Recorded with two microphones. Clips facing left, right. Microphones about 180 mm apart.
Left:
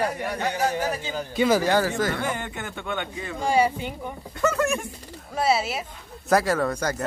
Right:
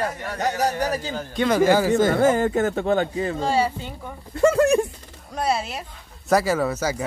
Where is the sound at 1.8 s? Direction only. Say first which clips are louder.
Right 7 dB; 25° right (ahead or behind).